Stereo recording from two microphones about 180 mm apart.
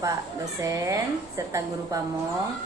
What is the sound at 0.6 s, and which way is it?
Speech, 20° right (ahead or behind).